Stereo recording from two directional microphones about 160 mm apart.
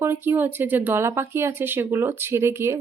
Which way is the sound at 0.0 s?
15° right (ahead or behind).